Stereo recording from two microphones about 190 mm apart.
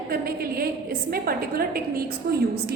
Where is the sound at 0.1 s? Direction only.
50° right (ahead or behind).